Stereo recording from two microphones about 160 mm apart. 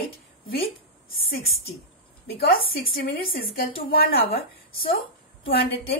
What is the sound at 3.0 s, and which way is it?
A woman's voice, 65° left (ahead or behind).